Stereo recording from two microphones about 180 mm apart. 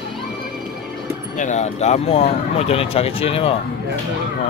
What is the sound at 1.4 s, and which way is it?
Speech, 40° left (ahead or behind).